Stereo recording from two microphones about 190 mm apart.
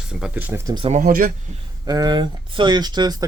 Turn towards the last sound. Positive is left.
turn(degrees=-20)  # may be behind; listen again after turning